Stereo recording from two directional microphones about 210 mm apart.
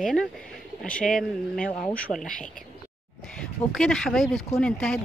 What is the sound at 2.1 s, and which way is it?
Speech, 20° left (ahead or behind).